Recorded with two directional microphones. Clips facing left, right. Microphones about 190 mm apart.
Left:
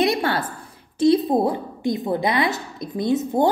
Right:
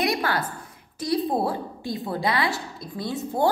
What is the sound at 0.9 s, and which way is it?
A woman's voice, 25° left (ahead or behind).